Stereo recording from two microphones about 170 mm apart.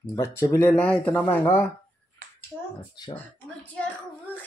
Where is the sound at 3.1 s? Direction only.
10° left (ahead or behind).